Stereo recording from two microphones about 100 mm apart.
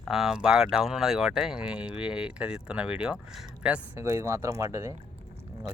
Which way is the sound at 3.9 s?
25° right (ahead or behind).